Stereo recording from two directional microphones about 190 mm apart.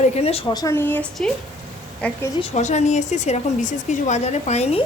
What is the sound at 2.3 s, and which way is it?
Speech, 35° left (ahead or behind).